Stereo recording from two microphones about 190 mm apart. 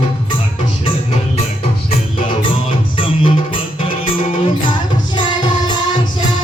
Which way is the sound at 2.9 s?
30° left (ahead or behind).